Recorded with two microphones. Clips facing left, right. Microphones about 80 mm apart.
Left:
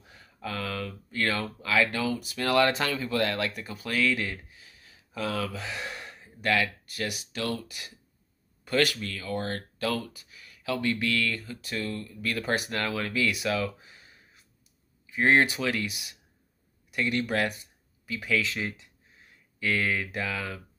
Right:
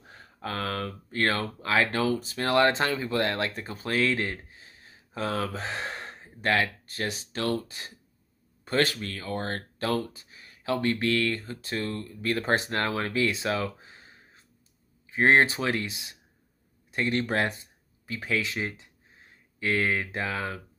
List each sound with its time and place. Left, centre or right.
0.0 s speech: right